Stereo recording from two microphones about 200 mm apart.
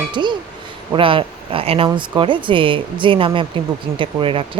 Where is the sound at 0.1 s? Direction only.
25° right (ahead or behind).